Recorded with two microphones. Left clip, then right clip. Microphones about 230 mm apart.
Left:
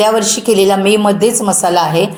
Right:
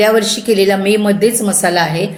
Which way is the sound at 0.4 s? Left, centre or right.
Left.